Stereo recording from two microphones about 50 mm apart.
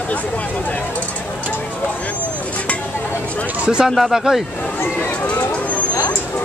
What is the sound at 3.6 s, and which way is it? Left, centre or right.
Speech, centre.